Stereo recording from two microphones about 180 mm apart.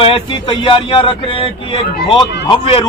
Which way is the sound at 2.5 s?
30° left (ahead or behind).